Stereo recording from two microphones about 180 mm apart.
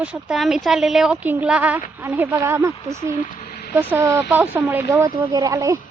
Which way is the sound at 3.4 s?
60° left (ahead or behind).